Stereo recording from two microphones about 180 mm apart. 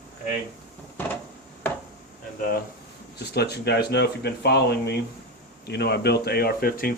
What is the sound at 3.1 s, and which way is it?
Speech, 65° left (ahead or behind).